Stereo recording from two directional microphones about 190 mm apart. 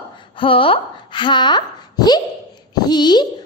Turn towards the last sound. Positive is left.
turn(degrees=25)  # may be behind; listen again after turning